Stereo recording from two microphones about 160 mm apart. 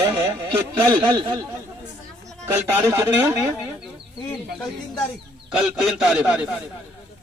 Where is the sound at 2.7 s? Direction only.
15° right (ahead or behind).